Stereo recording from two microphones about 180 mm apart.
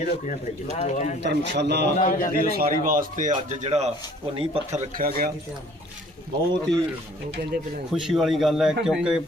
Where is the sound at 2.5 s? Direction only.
55° right (ahead or behind).